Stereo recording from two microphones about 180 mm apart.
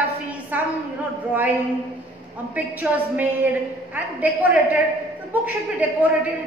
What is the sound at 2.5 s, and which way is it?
A woman's voice, 10° right (ahead or behind).